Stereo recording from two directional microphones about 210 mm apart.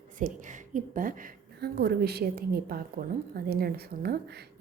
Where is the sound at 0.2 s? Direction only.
40° right (ahead or behind).